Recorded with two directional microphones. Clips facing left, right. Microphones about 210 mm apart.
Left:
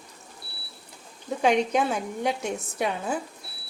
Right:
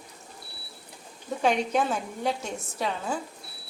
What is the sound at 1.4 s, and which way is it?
A woman's voice, 10° left (ahead or behind).